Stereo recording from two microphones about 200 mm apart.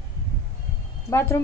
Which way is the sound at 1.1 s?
10° left (ahead or behind).